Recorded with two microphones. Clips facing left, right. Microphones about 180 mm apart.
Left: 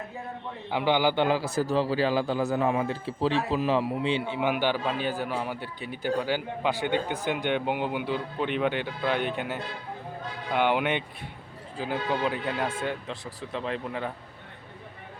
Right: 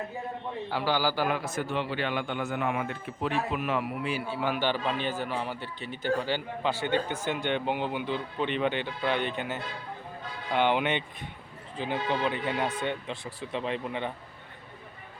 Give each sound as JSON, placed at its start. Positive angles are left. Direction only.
{"t": 0.7, "sound": "a man's voice", "side_deg": 20}